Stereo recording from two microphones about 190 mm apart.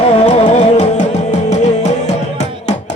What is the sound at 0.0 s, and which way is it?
Music, 35° left (ahead or behind).